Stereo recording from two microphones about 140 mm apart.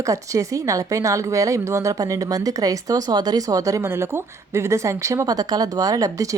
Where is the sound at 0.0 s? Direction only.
25° right (ahead or behind).